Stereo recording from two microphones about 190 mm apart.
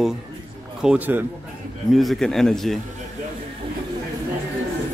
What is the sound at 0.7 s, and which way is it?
Speech, 5° right (ahead or behind).